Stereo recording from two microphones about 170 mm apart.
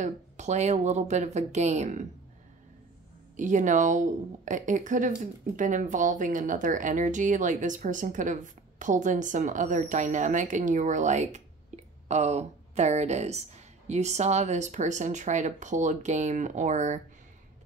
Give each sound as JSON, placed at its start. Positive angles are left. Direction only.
{"t": 0.0, "sound": "speech", "side_deg": -45}
{"t": 3.3, "sound": "speech", "side_deg": -45}